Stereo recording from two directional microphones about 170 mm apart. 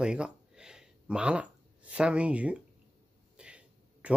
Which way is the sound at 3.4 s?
5° right (ahead or behind).